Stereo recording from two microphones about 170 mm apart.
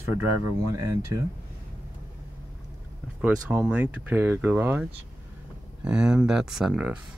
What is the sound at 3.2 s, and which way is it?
Speech, 10° right (ahead or behind).